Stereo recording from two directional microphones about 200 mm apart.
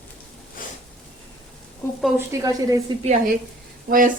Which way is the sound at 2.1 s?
15° right (ahead or behind).